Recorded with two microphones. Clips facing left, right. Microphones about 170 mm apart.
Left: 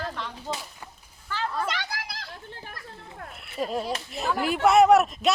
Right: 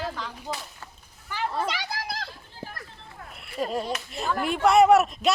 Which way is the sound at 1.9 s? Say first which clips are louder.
Right 2 dB; 25° right (ahead or behind).